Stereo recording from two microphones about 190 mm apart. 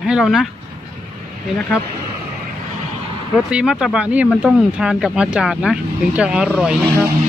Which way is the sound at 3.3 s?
5° right (ahead or behind).